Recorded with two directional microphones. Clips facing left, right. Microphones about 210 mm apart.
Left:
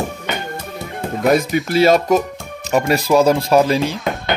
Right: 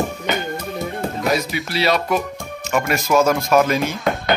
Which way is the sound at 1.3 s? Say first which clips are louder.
Left 8 dB; 50° left (ahead or behind).